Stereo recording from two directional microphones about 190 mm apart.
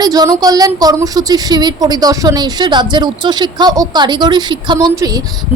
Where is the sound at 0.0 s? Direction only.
20° right (ahead or behind).